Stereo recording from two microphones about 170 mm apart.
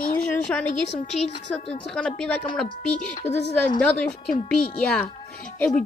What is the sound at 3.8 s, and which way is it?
A woman's voice, 5° left (ahead or behind).